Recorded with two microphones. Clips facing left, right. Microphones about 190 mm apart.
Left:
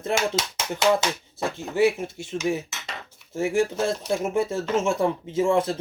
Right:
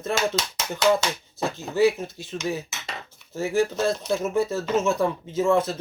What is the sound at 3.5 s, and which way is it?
Speech, 25° left (ahead or behind).